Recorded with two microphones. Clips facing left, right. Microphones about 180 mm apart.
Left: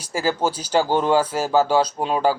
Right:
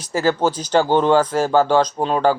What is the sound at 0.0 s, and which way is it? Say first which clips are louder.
Speech: right 4 dB; 10° left (ahead or behind).